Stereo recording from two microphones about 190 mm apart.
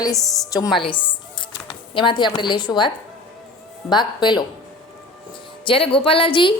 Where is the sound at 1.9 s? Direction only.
25° left (ahead or behind).